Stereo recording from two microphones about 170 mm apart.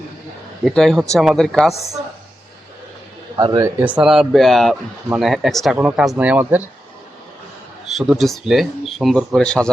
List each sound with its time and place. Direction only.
0.6 s speech: centre (ahead or behind)
3.3 s speech: 25° right (ahead or behind)
3.6 s speech: 10° right (ahead or behind)
7.9 s speech: centre (ahead or behind)